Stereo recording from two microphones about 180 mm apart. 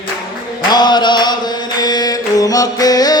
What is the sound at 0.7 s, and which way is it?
Music, 25° left (ahead or behind).